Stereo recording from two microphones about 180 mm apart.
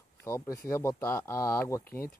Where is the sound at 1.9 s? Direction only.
55° left (ahead or behind).